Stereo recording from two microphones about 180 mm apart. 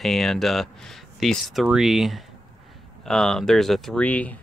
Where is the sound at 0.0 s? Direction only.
Centre (ahead or behind).